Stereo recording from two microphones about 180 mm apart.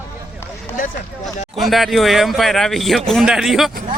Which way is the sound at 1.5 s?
Centre (ahead or behind).